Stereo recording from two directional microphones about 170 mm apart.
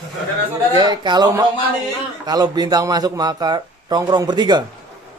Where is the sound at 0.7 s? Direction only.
25° right (ahead or behind).